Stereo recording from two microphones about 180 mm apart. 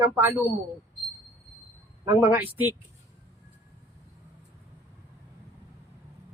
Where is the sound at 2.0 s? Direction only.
15° right (ahead or behind).